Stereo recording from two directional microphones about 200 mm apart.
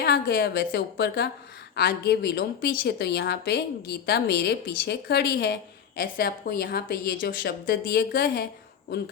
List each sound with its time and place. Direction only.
0.0 s a woman's voice: 55° left (ahead or behind)